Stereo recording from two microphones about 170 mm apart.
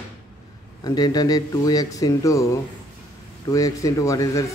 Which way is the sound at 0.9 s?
25° left (ahead or behind).